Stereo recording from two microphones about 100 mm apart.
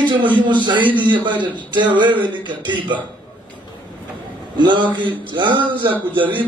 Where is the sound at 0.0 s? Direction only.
55° right (ahead or behind).